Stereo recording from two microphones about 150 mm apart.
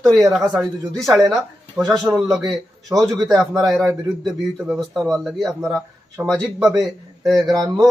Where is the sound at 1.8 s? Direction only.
20° right (ahead or behind).